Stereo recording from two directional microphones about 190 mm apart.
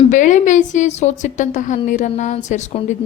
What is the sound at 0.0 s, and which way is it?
A woman's voice, 40° left (ahead or behind).